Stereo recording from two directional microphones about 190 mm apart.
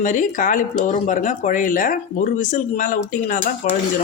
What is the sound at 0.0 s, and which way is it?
Speech, 40° left (ahead or behind).